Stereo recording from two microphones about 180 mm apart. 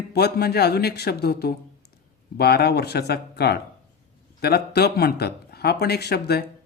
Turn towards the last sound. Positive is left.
turn(degrees=65)  # may be behind; listen again after turning